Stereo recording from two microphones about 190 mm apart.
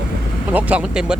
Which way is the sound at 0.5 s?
5° right (ahead or behind).